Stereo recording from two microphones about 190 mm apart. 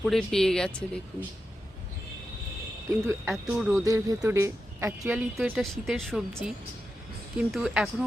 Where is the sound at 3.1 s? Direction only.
15° right (ahead or behind).